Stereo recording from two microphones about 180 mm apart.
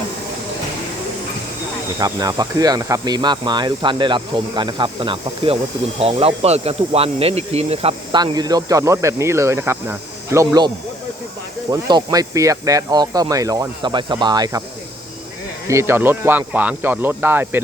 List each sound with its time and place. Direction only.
2.0 s speech: 20° right (ahead or behind)
11.7 s speech: 20° right (ahead or behind)
15.6 s speech: 15° right (ahead or behind)